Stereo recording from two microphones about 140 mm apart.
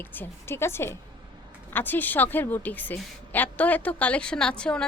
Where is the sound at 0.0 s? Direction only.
15° left (ahead or behind).